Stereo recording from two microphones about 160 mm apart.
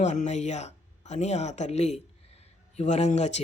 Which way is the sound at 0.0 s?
45° left (ahead or behind).